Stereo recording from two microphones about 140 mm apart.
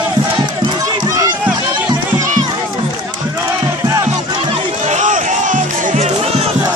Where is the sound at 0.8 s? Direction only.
25° right (ahead or behind).